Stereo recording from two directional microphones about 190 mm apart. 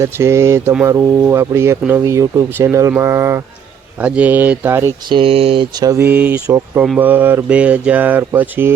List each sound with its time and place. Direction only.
0.0 s speech: 15° right (ahead or behind)
5.0 s speech: 25° right (ahead or behind); by 8.7 s 10° right (ahead or behind)